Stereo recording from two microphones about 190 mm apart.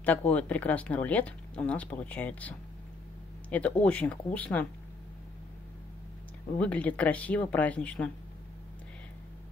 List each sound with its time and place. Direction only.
0.0 s speech: 5° left (ahead or behind)
6.6 s speech: 5° left (ahead or behind)